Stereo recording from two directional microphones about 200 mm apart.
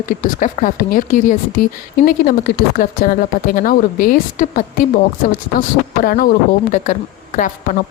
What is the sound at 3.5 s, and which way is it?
Speech, 45° left (ahead or behind).